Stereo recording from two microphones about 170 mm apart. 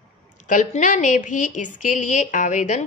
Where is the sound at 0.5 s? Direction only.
50° left (ahead or behind).